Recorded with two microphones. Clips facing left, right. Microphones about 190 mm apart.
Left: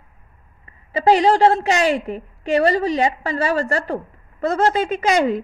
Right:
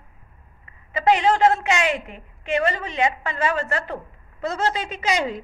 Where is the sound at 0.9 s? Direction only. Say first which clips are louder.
Left 4 dB; 35° left (ahead or behind).